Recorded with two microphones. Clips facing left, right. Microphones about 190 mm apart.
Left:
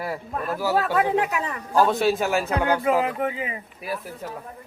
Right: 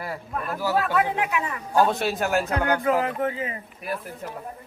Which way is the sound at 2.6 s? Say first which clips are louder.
Left 3 dB; 10° left (ahead or behind).